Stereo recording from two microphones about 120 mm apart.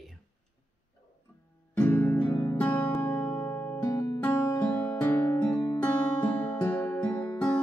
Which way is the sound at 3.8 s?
30° left (ahead or behind).